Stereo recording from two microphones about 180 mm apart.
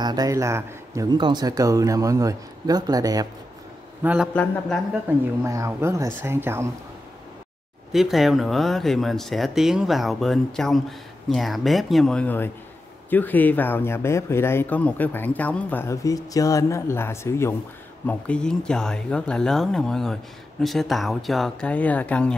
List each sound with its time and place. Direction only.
0.0 s speech: 20° right (ahead or behind)
4.0 s a man's voice: 10° right (ahead or behind)
4.3 s speech: 5° left (ahead or behind)
5.4 s speech: 15° right (ahead or behind)
7.9 s speech: centre (ahead or behind)